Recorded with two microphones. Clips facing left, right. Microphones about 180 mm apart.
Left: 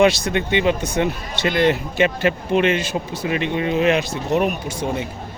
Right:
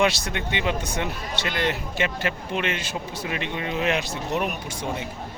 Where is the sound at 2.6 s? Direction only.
80° left.